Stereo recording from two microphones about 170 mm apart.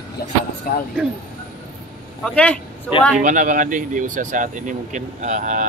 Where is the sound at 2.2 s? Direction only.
10° left (ahead or behind).